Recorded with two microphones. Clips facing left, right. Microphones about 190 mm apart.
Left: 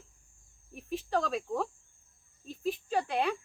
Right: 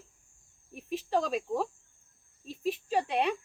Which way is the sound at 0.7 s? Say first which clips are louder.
Right 2 dB; 15° right (ahead or behind).